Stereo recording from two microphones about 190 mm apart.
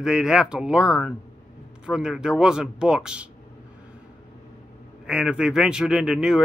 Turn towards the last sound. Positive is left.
turn(degrees=-5)  # may be behind; listen again after turning